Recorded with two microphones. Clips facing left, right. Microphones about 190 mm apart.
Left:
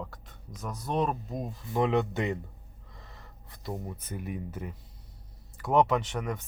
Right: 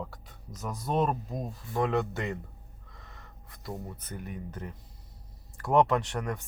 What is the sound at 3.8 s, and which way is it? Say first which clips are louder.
Speech: left 2 dB; 5° left (ahead or behind).